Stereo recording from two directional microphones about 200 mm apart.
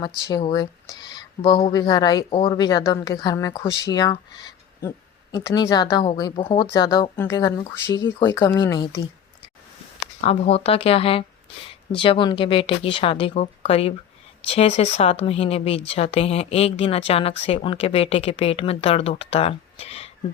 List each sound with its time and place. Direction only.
0.3 s a woman's voice: 20° left (ahead or behind)
10.2 s speech: 30° left (ahead or behind)